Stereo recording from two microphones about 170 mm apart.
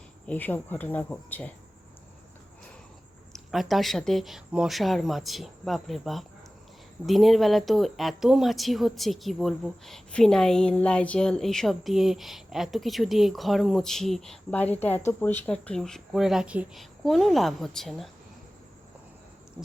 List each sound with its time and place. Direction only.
0.3 s speech: 10° left (ahead or behind)
3.3 s speech: centre (ahead or behind)